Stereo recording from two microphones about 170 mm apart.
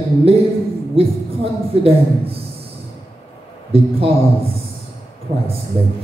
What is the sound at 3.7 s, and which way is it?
Speech, 35° right (ahead or behind).